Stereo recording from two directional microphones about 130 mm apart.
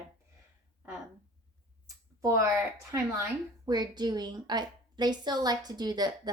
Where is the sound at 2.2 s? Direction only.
25° right (ahead or behind).